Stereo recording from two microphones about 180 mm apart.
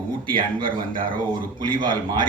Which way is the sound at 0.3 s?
25° right (ahead or behind).